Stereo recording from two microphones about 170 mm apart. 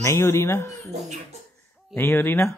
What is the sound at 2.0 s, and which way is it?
Speech, 10° left (ahead or behind).